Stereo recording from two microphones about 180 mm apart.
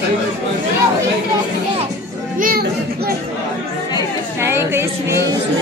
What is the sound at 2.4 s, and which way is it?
Chatter, 55° right (ahead or behind).